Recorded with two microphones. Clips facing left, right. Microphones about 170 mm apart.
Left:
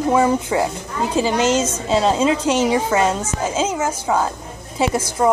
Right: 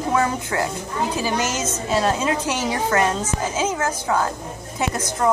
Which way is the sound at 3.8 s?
10° left (ahead or behind).